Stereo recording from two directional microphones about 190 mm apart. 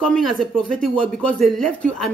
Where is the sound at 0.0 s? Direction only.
5° left (ahead or behind).